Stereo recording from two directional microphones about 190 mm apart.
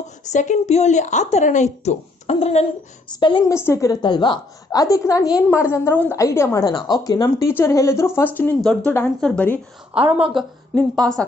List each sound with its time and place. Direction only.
0.3 s a woman's voice: 40° left (ahead or behind); by 5.2 s 20° left (ahead or behind)
5.2 s a woman's voice: 5° right (ahead or behind)
5.7 s a woman's voice: 10° left (ahead or behind)